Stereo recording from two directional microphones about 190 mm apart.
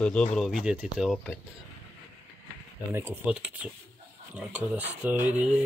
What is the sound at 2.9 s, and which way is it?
Speech, 10° right (ahead or behind).